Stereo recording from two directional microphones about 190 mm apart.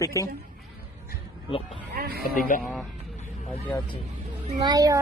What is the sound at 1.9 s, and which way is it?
Speech, 55° right (ahead or behind).